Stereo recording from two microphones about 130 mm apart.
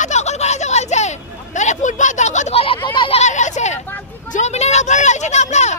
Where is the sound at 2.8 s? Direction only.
40° left (ahead or behind).